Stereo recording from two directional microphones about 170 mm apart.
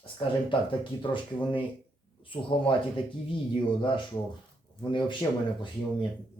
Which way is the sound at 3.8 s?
30° left (ahead or behind).